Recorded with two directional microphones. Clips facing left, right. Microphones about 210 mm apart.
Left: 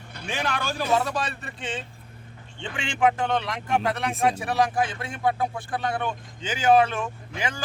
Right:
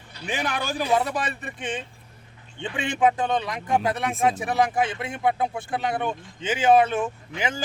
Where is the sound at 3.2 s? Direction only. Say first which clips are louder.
Right 1 dB; 15° right (ahead or behind).